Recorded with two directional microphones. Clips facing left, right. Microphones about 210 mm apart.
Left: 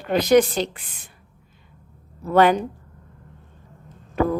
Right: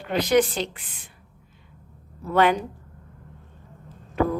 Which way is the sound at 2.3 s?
40° left (ahead or behind).